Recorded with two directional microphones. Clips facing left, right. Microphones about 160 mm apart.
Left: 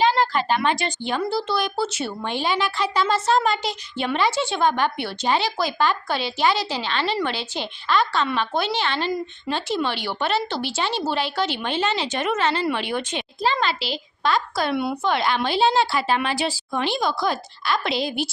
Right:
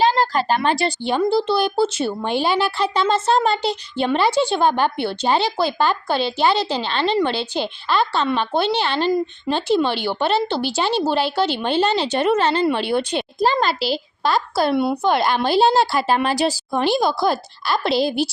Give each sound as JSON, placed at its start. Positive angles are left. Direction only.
{"t": 0.0, "sound": "a woman's voice", "side_deg": -35}